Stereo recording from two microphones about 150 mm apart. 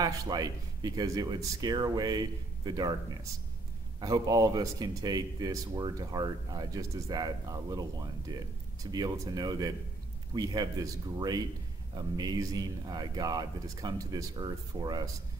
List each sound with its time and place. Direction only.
0.0 s speech: 25° right (ahead or behind)
4.0 s speech: 25° right (ahead or behind)